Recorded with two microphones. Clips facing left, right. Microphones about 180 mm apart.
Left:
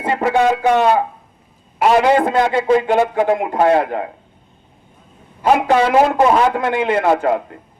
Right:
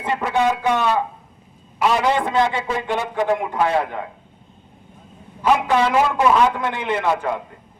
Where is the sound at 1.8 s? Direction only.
55° left (ahead or behind).